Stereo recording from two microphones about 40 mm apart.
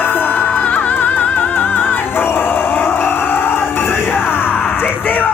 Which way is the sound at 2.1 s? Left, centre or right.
Left.